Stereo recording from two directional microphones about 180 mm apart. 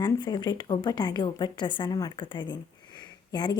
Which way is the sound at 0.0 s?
25° left (ahead or behind).